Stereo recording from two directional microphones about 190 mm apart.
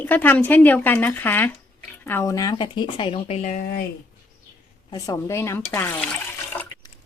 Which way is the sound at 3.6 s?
55° left (ahead or behind).